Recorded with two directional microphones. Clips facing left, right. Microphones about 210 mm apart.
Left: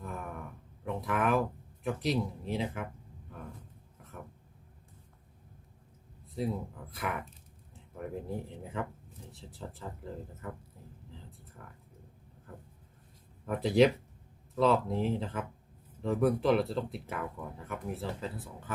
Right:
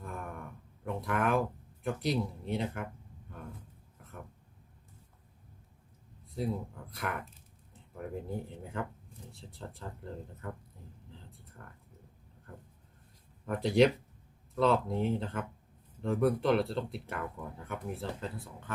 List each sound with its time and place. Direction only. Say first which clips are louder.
0.0 s a sound: left 1 dB; centre (ahead or behind)
0.9 s speech: left 1 dB; centre (ahead or behind)
6.3 s speech: left 1 dB; centre (ahead or behind)
11.6 s speech: even; 5° left (ahead or behind)
13.4 s speech: left 1 dB; centre (ahead or behind)